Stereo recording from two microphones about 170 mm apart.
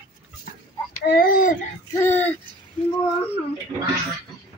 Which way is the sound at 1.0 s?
65° left (ahead or behind).